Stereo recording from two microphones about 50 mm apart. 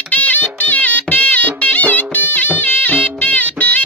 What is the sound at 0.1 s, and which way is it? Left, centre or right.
Music, left.